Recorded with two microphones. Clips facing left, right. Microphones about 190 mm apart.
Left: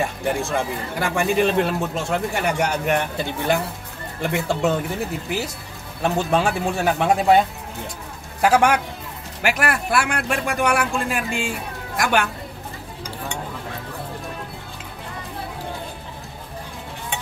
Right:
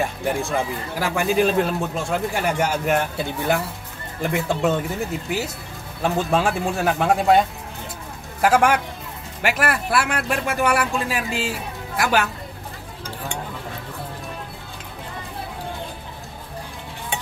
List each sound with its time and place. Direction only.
0.0 s a man's voice: centre (ahead or behind)